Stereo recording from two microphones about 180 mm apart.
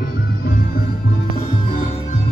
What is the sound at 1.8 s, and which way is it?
Music, 35° left (ahead or behind).